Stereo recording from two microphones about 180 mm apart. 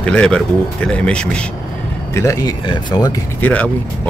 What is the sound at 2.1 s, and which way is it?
Speech, 15° left (ahead or behind).